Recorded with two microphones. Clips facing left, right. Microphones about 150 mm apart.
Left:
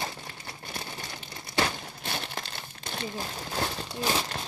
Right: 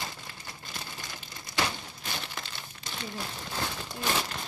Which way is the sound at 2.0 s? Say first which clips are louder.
Left 3 dB; 55° left (ahead or behind).